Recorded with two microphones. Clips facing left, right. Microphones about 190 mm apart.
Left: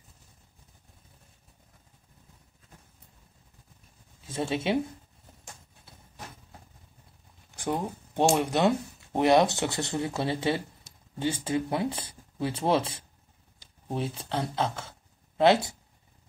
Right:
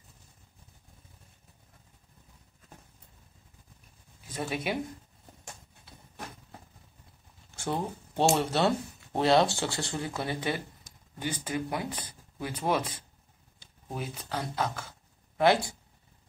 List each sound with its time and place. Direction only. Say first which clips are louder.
4.3 s speech: left 4 dB; 25° left (ahead or behind)
7.5 s a sound: left 2 dB; 15° left (ahead or behind)
8.4 s speech: left 2 dB; 15° left (ahead or behind)